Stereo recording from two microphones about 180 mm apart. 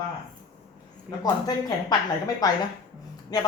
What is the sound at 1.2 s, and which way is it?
Speech, 20° left (ahead or behind).